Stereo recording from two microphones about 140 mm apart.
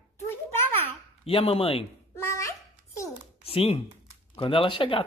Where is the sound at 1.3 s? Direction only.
45° left (ahead or behind).